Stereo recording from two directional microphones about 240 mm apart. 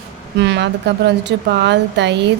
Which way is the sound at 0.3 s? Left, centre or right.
Right.